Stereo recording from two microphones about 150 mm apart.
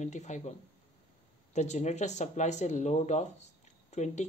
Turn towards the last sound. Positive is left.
turn(degrees=50)  # may be behind; listen again after turning